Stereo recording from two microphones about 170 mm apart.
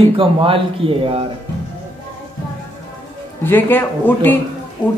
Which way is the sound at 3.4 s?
10° left (ahead or behind).